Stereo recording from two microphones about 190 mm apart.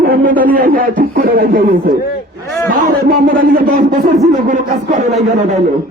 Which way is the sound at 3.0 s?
50° right (ahead or behind).